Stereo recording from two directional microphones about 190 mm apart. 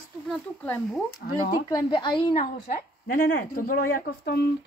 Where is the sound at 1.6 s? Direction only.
20° left (ahead or behind).